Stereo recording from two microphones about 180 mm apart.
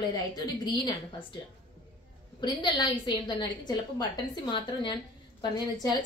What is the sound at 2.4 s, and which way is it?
A woman's voice, 25° left (ahead or behind).